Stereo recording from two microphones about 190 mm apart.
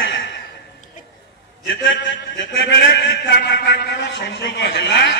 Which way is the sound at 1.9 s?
75° left (ahead or behind).